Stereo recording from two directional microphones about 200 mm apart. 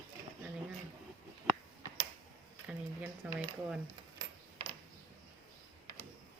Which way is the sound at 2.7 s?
5° right (ahead or behind).